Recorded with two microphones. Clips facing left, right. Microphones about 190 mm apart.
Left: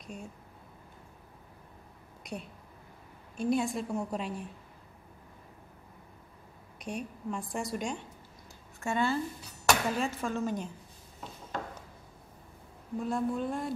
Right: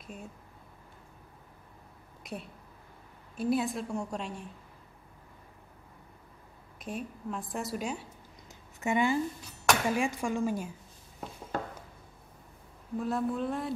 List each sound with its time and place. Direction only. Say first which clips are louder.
0.0 s speech: left 1 dB; 5° right (ahead or behind)
2.3 s a woman's voice: even; centre (ahead or behind)
6.8 s a woman's voice: even; centre (ahead or behind)
8.7 s speech: right 2 dB; 15° right (ahead or behind)
13.0 s a woman's voice: even; centre (ahead or behind)